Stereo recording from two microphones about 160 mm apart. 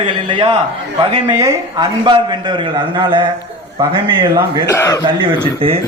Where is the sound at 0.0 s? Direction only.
30° right (ahead or behind).